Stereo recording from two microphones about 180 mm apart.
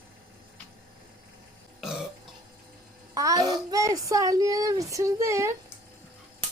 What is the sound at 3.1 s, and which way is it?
A child's voice, 20° right (ahead or behind).